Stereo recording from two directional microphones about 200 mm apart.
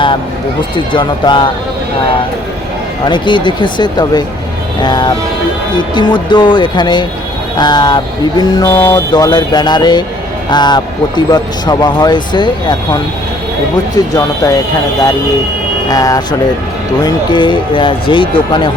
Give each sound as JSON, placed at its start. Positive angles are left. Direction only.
{"t": 0.9, "sound": "speech", "side_deg": 25}
{"t": 3.1, "sound": "speech", "side_deg": 25}
{"t": 13.9, "sound": "speech", "side_deg": 20}
{"t": 15.9, "sound": "speech", "side_deg": 20}